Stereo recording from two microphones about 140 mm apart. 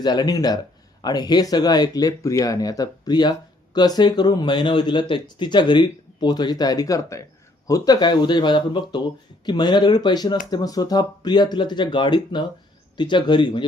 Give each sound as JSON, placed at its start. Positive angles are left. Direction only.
{"t": 0.0, "sound": "speech", "side_deg": 30}